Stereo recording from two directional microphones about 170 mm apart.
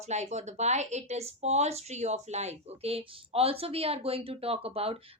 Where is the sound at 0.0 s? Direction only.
40° right (ahead or behind).